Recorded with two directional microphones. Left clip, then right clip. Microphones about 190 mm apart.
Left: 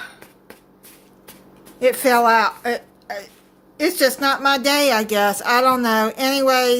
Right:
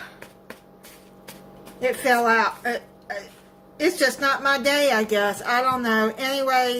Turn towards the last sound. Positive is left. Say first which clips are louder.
# left 5 dB
turn(degrees=55)  # may be behind; listen again after turning